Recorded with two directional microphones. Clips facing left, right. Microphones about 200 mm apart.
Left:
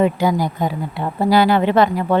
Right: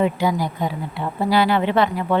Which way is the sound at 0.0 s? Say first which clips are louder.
Left 3 dB; 45° left (ahead or behind).